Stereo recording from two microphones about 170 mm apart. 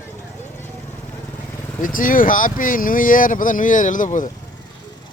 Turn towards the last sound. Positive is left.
turn(degrees=50)  # may be behind; listen again after turning